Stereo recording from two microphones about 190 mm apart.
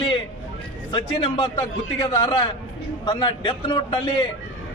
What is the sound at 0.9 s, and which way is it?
A man's voice, 30° left (ahead or behind).